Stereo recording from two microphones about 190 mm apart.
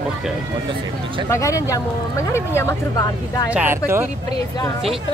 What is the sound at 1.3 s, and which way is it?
Speech, 15° left (ahead or behind).